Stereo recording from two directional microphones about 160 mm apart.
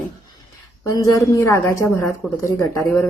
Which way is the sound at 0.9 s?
20° left (ahead or behind).